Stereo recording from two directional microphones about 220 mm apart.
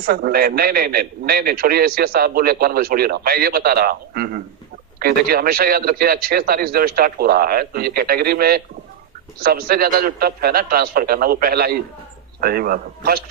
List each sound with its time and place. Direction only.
0.0 s a man's voice: 40° right (ahead or behind)